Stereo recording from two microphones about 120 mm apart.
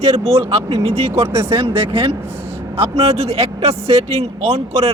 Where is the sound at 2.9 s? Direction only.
60° right (ahead or behind).